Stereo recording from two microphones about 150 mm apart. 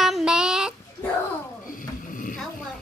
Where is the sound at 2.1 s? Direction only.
65° left (ahead or behind).